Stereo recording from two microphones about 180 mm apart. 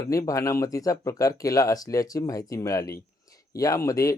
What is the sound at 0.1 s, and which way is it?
Speech, 15° left (ahead or behind).